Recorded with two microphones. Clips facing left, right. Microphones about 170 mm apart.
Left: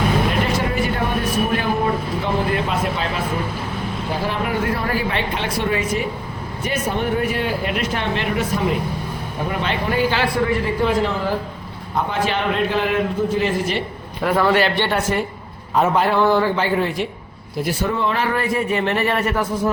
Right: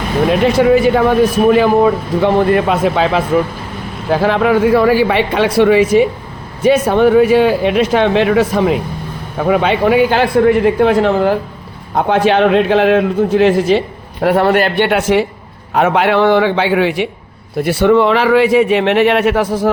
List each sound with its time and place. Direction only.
0.3 s speech: 90° right
9.4 s speech: 70° right (ahead or behind)
11.9 s a man's voice: 80° right
14.2 s speech: 65° right (ahead or behind); by 15.3 s 90° right
15.7 s a man's voice: 75° right (ahead or behind)